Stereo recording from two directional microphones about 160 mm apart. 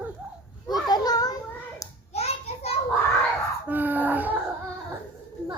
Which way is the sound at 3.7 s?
10° right (ahead or behind).